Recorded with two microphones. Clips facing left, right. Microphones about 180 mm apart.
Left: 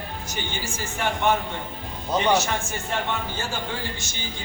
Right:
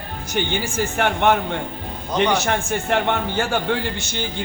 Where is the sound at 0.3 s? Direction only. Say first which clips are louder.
Right 10 dB; 65° right (ahead or behind).